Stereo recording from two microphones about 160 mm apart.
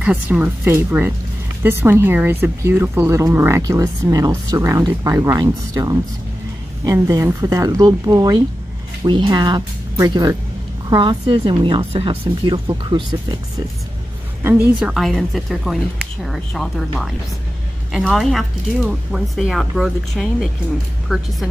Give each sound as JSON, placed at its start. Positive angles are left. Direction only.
{"t": 0.0, "sound": "speech", "side_deg": -10}
{"t": 14.4, "sound": "speech", "side_deg": -10}